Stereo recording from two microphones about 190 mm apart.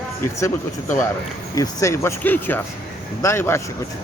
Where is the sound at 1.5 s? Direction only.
15° left (ahead or behind).